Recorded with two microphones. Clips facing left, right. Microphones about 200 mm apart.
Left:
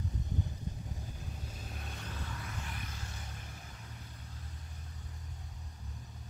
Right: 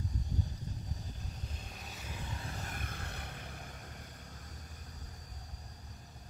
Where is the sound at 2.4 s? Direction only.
40° right (ahead or behind); by 3.3 s 60° right (ahead or behind).